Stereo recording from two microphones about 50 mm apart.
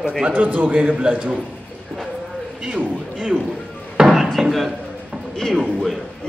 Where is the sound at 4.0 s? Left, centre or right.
Right.